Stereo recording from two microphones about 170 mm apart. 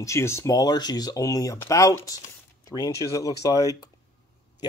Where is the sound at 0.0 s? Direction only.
15° left (ahead or behind).